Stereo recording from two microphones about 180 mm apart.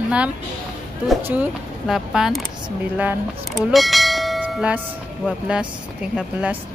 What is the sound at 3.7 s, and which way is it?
Church bell, centre (ahead or behind).